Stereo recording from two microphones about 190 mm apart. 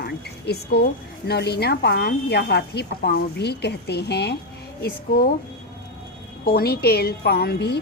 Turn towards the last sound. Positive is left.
turn(degrees=60)  # may be behind; listen again after turning